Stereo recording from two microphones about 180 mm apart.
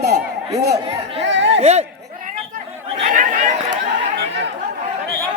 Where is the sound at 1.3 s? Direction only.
85° right.